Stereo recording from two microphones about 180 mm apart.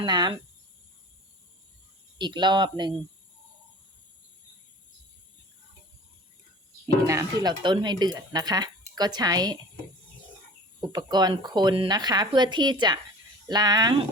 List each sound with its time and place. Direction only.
0.0 s speech: 25° right (ahead or behind)
2.1 s speech: 25° right (ahead or behind)
6.8 s speech: 20° right (ahead or behind)
10.8 s speech: 25° right (ahead or behind)